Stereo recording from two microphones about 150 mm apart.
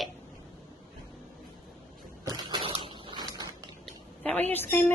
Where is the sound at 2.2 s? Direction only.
30° right (ahead or behind).